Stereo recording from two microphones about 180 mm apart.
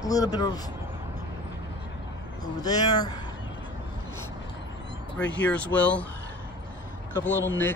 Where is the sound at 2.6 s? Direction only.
20° left (ahead or behind).